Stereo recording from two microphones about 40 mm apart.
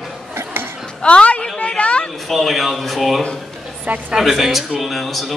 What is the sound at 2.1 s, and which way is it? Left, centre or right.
A man's voice, centre.